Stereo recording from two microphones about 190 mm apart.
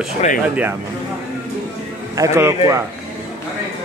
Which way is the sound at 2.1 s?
15° right (ahead or behind).